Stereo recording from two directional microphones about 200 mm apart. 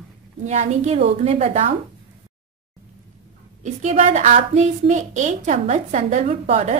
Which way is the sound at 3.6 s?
35° right (ahead or behind).